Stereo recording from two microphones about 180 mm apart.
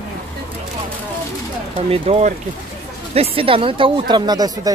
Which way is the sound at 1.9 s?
35° right (ahead or behind).